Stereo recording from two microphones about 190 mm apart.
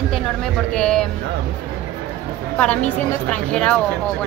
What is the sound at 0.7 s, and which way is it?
Speech, 5° left (ahead or behind).